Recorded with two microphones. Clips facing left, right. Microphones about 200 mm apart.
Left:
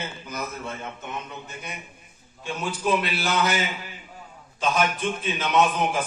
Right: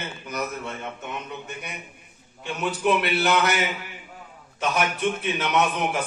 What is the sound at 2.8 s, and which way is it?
Speech, 65° right (ahead or behind).